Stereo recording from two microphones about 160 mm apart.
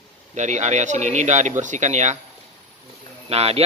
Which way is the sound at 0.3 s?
45° right (ahead or behind).